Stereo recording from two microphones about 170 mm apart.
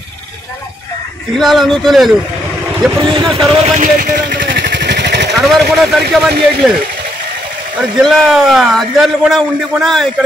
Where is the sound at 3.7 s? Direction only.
55° right (ahead or behind); by 5.3 s 85° right.